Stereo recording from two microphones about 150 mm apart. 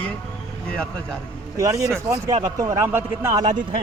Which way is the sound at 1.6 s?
20° right (ahead or behind).